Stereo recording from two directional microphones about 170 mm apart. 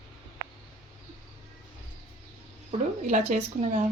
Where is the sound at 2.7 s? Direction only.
45° right (ahead or behind).